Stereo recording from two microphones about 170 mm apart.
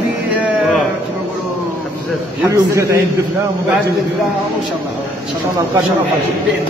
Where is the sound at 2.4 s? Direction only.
15° right (ahead or behind).